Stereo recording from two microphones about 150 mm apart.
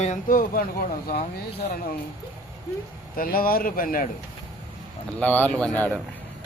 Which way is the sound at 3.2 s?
75° left (ahead or behind).